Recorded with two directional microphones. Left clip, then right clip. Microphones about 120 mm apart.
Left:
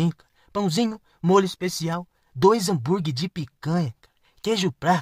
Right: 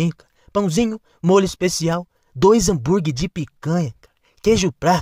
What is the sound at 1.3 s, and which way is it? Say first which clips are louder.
A woman's voice: right 4 dB; 40° right (ahead or behind).